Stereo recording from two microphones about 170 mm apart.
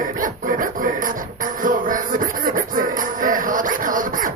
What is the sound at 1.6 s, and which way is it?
Music, 50° right (ahead or behind).